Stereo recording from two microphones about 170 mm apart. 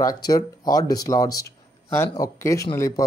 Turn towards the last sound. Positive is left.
turn(degrees=20)  # may be behind; listen again after turning